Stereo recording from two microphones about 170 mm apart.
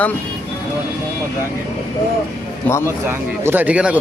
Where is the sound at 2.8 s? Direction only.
15° right (ahead or behind).